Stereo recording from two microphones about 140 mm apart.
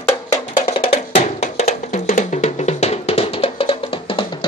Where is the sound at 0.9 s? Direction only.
50° left (ahead or behind).